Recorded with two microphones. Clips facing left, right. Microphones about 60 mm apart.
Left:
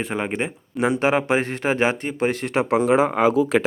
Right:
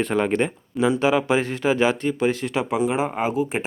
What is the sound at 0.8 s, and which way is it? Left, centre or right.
Speech, left.